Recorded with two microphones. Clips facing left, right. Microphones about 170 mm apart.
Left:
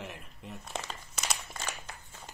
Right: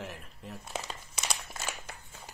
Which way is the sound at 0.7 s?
5° right (ahead or behind).